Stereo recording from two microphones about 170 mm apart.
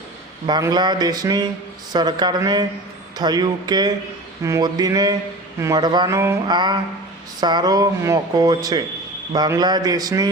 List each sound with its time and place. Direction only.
0.4 s speech: 25° right (ahead or behind)